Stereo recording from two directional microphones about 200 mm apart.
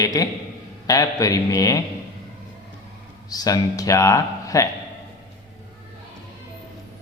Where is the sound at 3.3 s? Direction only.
20° left (ahead or behind).